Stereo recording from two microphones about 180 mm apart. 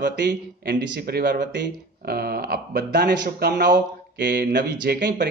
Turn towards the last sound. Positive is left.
turn(degrees=-60)  # may be behind; listen again after turning